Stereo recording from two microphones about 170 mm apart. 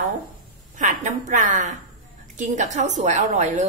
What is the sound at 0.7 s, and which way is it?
A woman's voice, 45° right (ahead or behind).